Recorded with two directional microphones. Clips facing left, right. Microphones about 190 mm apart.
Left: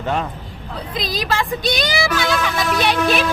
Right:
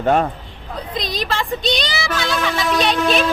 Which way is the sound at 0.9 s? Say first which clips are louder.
Left 1 dB; centre (ahead or behind).